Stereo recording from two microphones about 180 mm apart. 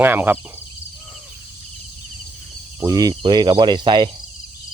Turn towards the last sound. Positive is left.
turn(degrees=-25)  # may be behind; listen again after turning